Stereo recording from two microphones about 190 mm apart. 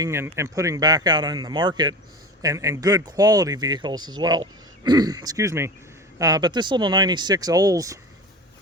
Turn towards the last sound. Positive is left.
turn(degrees=-20)  # may be behind; listen again after turning